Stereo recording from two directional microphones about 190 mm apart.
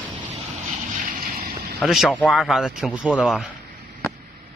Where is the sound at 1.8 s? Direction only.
Centre (ahead or behind).